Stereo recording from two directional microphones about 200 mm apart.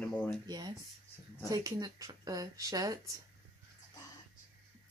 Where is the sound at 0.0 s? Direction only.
5° left (ahead or behind).